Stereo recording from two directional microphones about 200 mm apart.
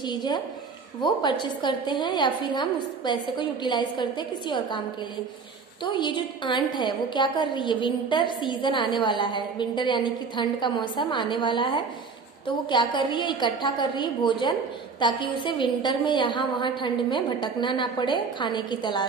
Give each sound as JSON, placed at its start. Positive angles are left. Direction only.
{"t": 0.0, "sound": "a woman's voice", "side_deg": 20}
{"t": 5.9, "sound": "a woman's voice", "side_deg": 25}